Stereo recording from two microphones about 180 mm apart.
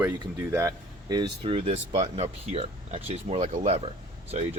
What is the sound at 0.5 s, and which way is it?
Speech, 20° right (ahead or behind).